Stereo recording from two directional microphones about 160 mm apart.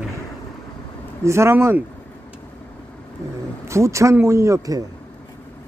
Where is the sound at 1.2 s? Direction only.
15° right (ahead or behind).